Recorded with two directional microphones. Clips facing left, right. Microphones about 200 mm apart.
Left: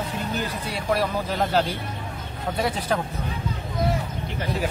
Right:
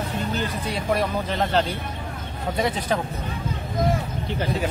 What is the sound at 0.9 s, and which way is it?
A man's voice, 5° left (ahead or behind).